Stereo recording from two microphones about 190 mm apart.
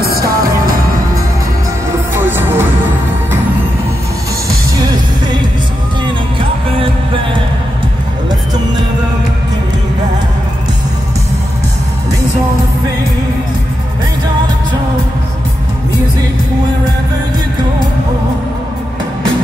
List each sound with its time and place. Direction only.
0.0 s music: 50° right (ahead or behind)
2.1 s music: 10° right (ahead or behind)